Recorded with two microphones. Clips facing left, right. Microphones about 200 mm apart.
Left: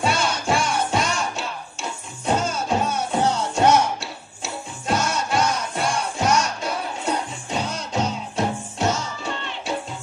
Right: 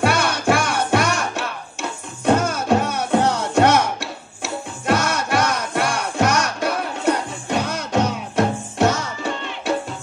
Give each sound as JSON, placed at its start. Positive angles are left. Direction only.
{"t": 0.0, "sound": "music", "side_deg": -65}